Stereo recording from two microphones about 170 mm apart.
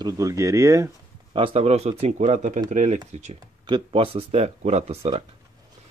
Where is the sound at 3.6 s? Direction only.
30° right (ahead or behind).